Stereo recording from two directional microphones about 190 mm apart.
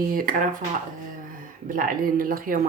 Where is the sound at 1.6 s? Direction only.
45° right (ahead or behind).